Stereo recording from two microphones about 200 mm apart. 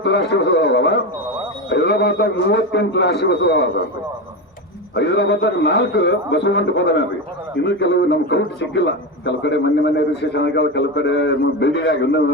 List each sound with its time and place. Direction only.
0.0 s a man's voice: 60° left (ahead or behind)
4.9 s a man's voice: 60° left (ahead or behind)